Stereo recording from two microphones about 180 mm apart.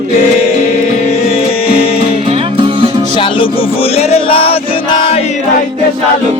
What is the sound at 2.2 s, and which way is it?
Music, 30° right (ahead or behind).